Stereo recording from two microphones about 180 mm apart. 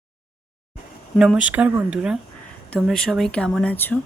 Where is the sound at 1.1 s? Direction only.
5° right (ahead or behind).